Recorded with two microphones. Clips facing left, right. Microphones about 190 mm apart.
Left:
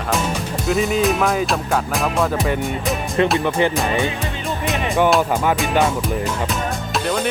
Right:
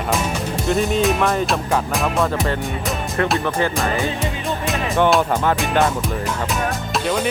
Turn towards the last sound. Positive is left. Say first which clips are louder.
# even
turn(degrees=-5)  # may be behind; listen again after turning